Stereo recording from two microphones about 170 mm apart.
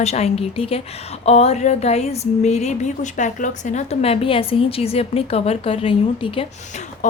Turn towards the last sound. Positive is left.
turn(degrees=40)  # may be behind; listen again after turning